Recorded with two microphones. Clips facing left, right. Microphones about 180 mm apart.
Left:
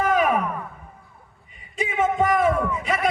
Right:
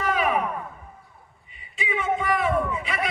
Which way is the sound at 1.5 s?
45° left (ahead or behind).